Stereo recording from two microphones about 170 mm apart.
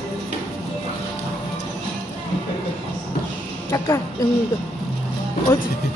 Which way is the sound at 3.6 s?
15° left (ahead or behind).